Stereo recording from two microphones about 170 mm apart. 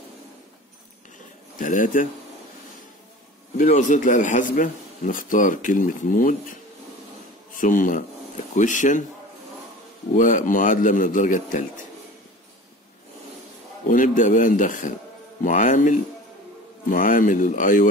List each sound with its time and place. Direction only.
1.6 s speech: 50° left (ahead or behind)
3.5 s speech: 45° left (ahead or behind)
10.1 s speech: 50° left (ahead or behind)
13.8 s speech: 50° left (ahead or behind)